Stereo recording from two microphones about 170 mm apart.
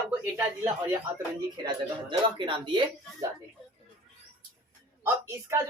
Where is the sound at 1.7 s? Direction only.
30° right (ahead or behind).